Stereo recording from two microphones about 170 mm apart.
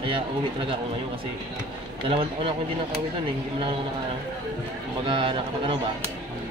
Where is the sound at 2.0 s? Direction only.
30° right (ahead or behind).